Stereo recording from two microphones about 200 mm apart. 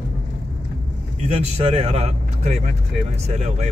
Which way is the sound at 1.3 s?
30° right (ahead or behind).